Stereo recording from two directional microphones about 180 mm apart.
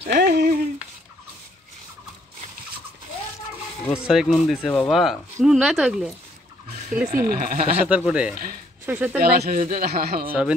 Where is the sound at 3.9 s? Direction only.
5° right (ahead or behind).